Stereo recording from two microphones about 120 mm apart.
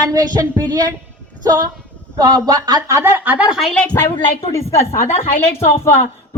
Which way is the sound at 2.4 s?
30° right (ahead or behind).